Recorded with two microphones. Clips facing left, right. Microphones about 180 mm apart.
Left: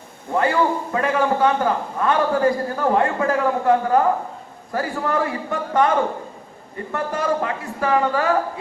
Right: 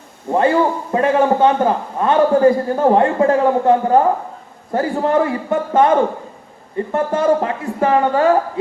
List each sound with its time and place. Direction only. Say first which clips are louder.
0.3 s a man's voice: right 4 dB; 25° right (ahead or behind)